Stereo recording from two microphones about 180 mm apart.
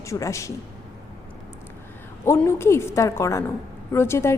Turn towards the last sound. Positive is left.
turn(degrees=15)  # may be behind; listen again after turning